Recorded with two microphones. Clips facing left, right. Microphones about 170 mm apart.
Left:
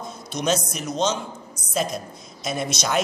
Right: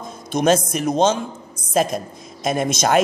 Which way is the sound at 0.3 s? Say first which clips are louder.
Right 7 dB; 50° right (ahead or behind).